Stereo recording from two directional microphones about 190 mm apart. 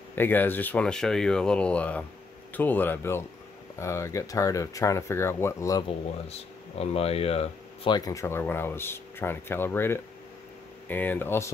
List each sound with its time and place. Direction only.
0.1 s speech: 10° left (ahead or behind)
6.8 s speech: 30° left (ahead or behind); by 11.5 s 15° left (ahead or behind)